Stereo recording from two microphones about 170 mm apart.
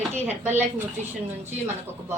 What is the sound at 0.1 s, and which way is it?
A woman's voice, 10° right (ahead or behind).